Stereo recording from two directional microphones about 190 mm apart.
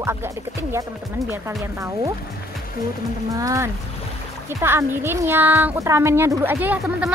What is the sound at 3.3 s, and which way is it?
Speech, 15° right (ahead or behind).